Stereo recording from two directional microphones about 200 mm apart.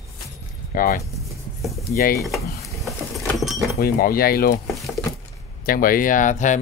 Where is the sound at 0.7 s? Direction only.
45° left (ahead or behind).